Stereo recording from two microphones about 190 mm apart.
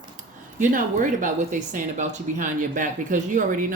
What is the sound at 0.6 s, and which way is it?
A woman's voice, 45° right (ahead or behind).